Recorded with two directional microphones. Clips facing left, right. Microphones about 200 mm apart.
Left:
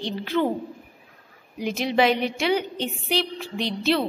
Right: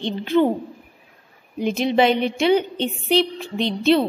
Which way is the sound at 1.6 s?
25° right (ahead or behind).